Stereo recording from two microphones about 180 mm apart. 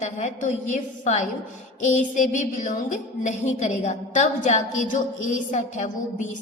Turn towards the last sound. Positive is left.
turn(degrees=40)  # may be behind; listen again after turning